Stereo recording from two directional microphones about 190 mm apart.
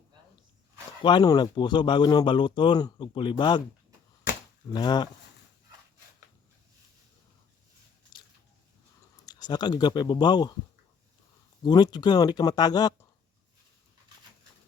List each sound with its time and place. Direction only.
1.0 s speech: 20° left (ahead or behind)
4.7 s speech: 20° left (ahead or behind)
8.1 s a sound: 25° left (ahead or behind)
9.2 s speech: 20° left (ahead or behind)
11.6 s speech: 20° left (ahead or behind)